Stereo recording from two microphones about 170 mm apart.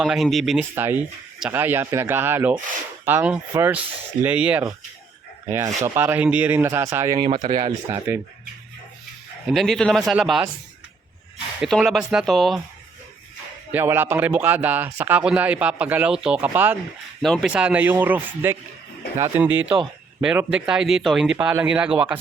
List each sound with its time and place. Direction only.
0.0 s speech: centre (ahead or behind)
0.8 s speech: 10° right (ahead or behind)
7.2 s speech: 30° right (ahead or behind)
9.5 s speech: centre (ahead or behind)
11.6 s speech: centre (ahead or behind)
13.7 s speech: 10° right (ahead or behind)
17.2 s speech: centre (ahead or behind)
17.5 s speech: 10° right (ahead or behind)